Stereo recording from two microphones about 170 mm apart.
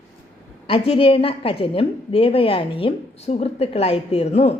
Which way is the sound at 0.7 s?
35° left (ahead or behind).